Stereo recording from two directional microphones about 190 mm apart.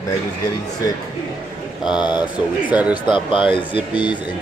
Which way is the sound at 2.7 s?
5° right (ahead or behind).